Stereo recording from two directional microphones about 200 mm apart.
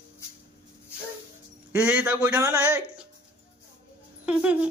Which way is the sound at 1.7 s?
5° right (ahead or behind).